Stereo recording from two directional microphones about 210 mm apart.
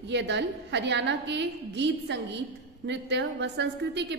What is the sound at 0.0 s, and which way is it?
A woman's voice, 55° right (ahead or behind).